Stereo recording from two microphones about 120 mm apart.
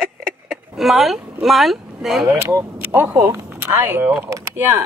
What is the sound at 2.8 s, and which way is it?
Speech, 15° right (ahead or behind).